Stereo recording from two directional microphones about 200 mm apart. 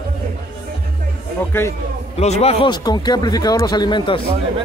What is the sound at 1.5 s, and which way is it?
Speech, 10° left (ahead or behind).